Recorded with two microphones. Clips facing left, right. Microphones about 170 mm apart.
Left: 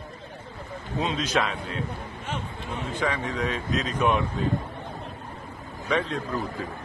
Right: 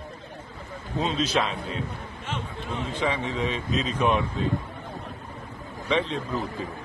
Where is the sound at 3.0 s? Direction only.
25° right (ahead or behind).